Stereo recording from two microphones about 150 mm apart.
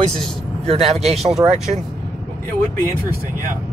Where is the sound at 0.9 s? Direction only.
Centre (ahead or behind).